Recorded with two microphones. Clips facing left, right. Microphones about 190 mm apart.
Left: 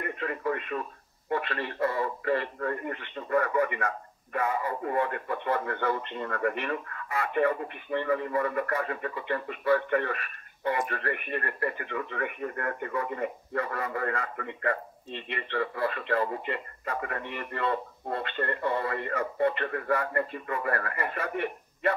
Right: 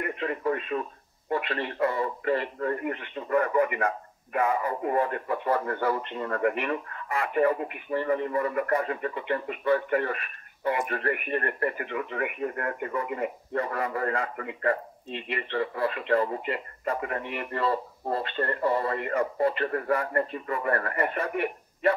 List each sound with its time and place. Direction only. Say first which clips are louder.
0.0 s radio: right 3 dB; 25° right (ahead or behind)
1.3 s a man's voice: right 2 dB; 25° right (ahead or behind)
15.5 s speech: right 1 dB; 25° right (ahead or behind)
17.2 s speech: right 3 dB; 15° right (ahead or behind)
17.6 s speech: right 2 dB; 30° right (ahead or behind)